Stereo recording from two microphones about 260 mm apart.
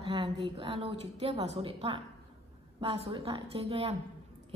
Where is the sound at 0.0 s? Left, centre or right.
Right.